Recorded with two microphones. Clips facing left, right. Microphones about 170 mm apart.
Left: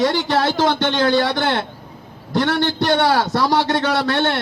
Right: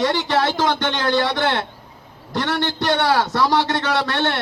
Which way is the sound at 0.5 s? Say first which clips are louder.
Left 3 dB; 30° left (ahead or behind).